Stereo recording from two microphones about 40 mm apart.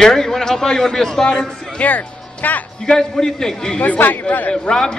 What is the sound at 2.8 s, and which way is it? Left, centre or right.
Speech, centre.